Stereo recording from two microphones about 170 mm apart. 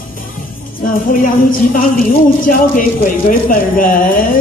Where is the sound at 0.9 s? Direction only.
55° left (ahead or behind).